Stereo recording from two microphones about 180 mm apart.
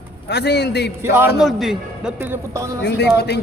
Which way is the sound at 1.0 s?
15° right (ahead or behind).